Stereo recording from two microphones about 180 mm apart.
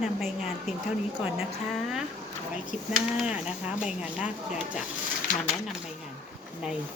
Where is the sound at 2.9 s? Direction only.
Centre (ahead or behind).